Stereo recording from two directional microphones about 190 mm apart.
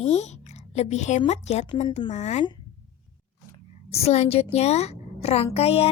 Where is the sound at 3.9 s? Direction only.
35° left (ahead or behind).